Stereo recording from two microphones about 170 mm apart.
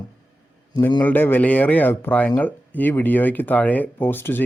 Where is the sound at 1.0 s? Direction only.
10° left (ahead or behind).